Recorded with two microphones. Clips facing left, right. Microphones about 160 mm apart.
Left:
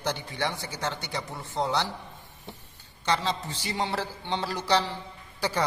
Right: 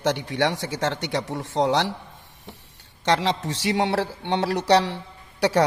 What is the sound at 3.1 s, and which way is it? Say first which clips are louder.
A man's voice: right 6 dB; 85° right.